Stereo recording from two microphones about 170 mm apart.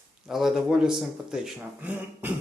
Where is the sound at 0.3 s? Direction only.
Centre (ahead or behind).